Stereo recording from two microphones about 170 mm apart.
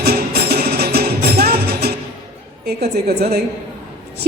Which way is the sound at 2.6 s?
70° right (ahead or behind).